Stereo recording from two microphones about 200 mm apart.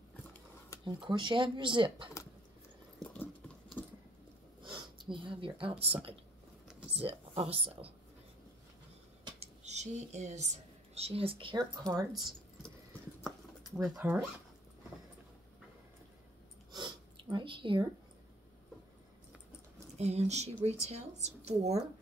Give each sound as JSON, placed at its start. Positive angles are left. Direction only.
{"t": 0.8, "sound": "speech", "side_deg": -25}
{"t": 3.0, "sound": "a sound", "side_deg": 5}
{"t": 4.6, "sound": "speech", "side_deg": -25}
{"t": 9.2, "sound": "speech", "side_deg": -35}
{"t": 13.7, "sound": "speech", "side_deg": 0}
{"t": 16.7, "sound": "a sound", "side_deg": -25}
{"t": 20.0, "sound": "speech", "side_deg": -35}